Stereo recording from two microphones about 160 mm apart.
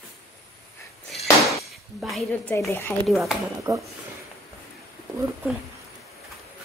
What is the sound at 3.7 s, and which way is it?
Speech, 20° right (ahead or behind).